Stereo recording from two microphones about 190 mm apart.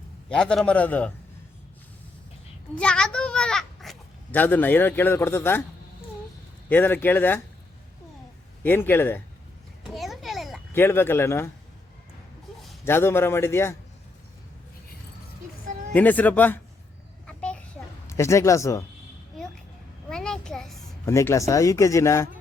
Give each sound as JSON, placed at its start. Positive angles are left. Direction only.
{"t": 0.3, "sound": "speech", "side_deg": 5}
{"t": 2.7, "sound": "a child's voice", "side_deg": 5}
{"t": 6.7, "sound": "speech", "side_deg": 10}
{"t": 8.6, "sound": "speech", "side_deg": 10}
{"t": 9.9, "sound": "a sound", "side_deg": 0}
{"t": 10.8, "sound": "speech", "side_deg": 10}
{"t": 12.8, "sound": "speech", "side_deg": 10}
{"t": 15.9, "sound": "speech", "side_deg": 10}
{"t": 17.2, "sound": "a sound", "side_deg": 5}
{"t": 20.1, "sound": "a sound", "side_deg": 5}
{"t": 21.1, "sound": "speech", "side_deg": 15}